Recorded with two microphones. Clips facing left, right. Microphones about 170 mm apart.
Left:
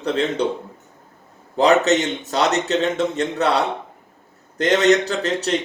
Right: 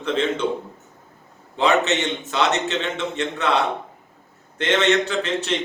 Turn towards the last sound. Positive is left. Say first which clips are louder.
# left 2 dB
turn(degrees=40)  # may be behind; listen again after turning